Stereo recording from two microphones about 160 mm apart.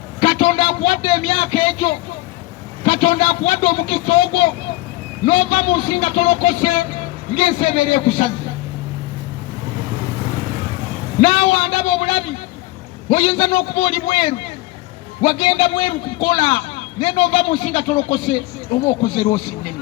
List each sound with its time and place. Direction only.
0.2 s a sound: 35° left (ahead or behind)
2.8 s a man's voice: 35° left (ahead or behind)
11.2 s a man's voice: 35° left (ahead or behind)